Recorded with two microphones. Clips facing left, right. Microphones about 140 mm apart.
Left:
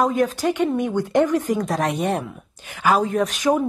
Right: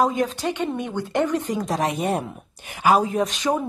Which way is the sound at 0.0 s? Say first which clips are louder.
Left 2 dB; centre (ahead or behind).